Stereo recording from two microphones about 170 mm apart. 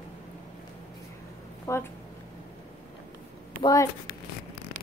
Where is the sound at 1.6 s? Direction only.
15° left (ahead or behind).